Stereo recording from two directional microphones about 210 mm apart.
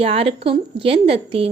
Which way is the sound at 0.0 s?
30° right (ahead or behind).